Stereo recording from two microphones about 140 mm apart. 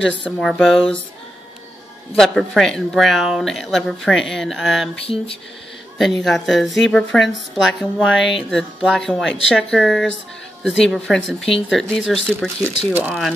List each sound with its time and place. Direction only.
0.2 s speech: centre (ahead or behind)
2.1 s speech: centre (ahead or behind)
5.0 s speech: 40° left (ahead or behind)
5.9 s speech: 5° left (ahead or behind)
12.6 s speech: 15° right (ahead or behind)